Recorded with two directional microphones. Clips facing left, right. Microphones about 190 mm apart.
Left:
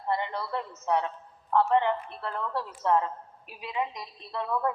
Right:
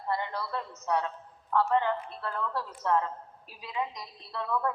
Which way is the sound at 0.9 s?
20° left (ahead or behind).